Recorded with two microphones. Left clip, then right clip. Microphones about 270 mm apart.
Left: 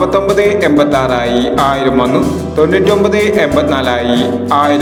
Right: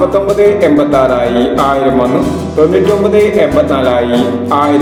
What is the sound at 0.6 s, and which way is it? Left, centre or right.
Music, left.